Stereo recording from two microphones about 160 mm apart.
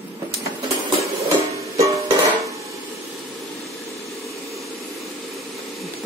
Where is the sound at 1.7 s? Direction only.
20° right (ahead or behind).